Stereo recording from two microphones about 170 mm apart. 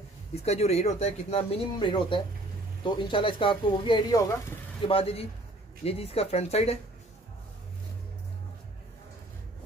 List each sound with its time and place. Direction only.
0.4 s speech: 40° left (ahead or behind); by 4.4 s 20° left (ahead or behind)
4.8 s speech: 35° left (ahead or behind)